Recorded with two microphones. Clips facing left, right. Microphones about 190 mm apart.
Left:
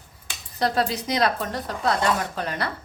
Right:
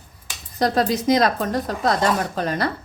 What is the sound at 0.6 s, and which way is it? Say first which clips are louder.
A woman's voice: right 4 dB; 40° right (ahead or behind).